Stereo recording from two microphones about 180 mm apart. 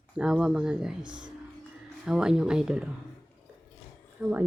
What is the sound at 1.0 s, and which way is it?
Speech, 25° right (ahead or behind).